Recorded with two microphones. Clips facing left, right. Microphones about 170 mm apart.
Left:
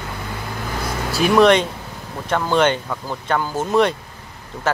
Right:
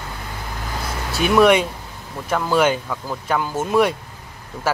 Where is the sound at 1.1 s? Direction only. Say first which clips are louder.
Left 1 dB; centre (ahead or behind).